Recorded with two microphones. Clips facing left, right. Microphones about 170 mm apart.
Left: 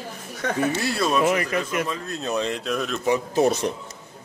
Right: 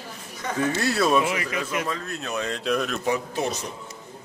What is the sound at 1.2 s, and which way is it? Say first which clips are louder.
Speech: left 5 dB; 50° left (ahead or behind).